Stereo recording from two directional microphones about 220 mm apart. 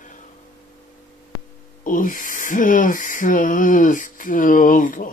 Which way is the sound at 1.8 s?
35° left (ahead or behind).